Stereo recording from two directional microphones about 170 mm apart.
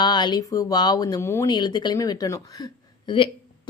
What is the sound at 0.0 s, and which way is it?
Speech, 25° left (ahead or behind).